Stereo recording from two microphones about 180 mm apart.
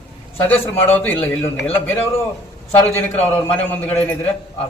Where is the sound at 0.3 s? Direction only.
15° left (ahead or behind).